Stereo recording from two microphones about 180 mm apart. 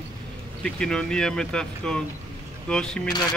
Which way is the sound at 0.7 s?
5° left (ahead or behind).